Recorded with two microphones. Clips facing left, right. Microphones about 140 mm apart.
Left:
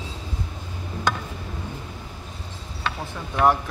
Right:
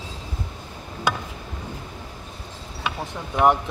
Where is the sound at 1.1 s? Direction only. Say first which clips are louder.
Even; 10° right (ahead or behind).